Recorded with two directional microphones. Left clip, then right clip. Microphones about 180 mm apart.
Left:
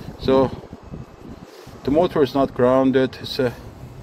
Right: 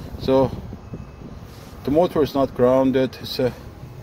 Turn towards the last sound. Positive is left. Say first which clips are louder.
# left 1 dB
turn(degrees=-25)  # may be behind; listen again after turning